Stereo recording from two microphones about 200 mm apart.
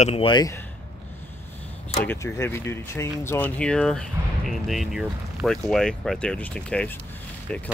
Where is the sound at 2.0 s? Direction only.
10° left (ahead or behind).